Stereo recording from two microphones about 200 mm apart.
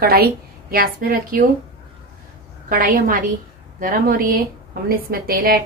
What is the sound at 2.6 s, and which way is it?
A woman's voice, 45° right (ahead or behind).